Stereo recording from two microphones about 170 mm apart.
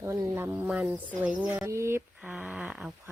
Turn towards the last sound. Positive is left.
turn(degrees=-5)  # may be behind; listen again after turning